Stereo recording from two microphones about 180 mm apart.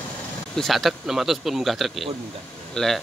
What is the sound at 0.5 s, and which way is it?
A man's voice, centre (ahead or behind).